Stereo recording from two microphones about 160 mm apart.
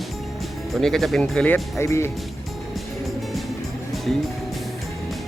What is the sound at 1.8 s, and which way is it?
Speech, 15° left (ahead or behind).